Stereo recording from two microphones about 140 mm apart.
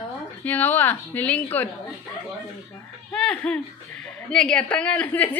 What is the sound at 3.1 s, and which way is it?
Speech, 10° left (ahead or behind).